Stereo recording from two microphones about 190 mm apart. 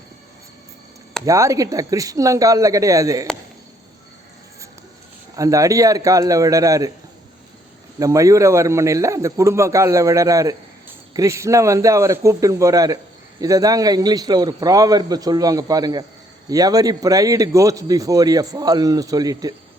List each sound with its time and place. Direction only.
1.2 s a man's voice: 15° right (ahead or behind)
5.4 s a man's voice: 15° right (ahead or behind)
7.9 s a man's voice: 15° right (ahead or behind)